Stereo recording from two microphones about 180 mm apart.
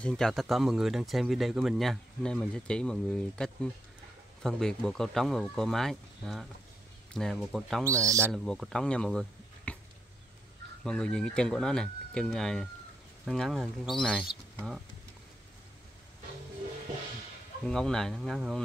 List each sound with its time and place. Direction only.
0.0 s speech: 5° left (ahead or behind)
7.8 s speech: 15° right (ahead or behind)
8.3 s speech: centre (ahead or behind)
9.7 s a sound: 5° left (ahead or behind)
10.8 s speech: 5° left (ahead or behind)
17.6 s speech: 5° left (ahead or behind)